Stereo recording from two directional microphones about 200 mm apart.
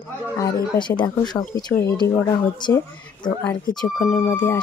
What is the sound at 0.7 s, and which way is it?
Speech, 20° left (ahead or behind).